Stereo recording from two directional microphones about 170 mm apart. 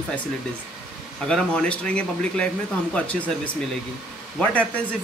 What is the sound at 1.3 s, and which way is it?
Speech, 5° left (ahead or behind).